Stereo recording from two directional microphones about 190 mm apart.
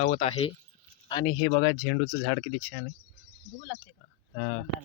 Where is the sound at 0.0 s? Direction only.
35° left (ahead or behind).